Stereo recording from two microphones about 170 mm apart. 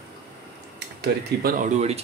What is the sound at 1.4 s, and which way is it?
Speech, 55° right (ahead or behind).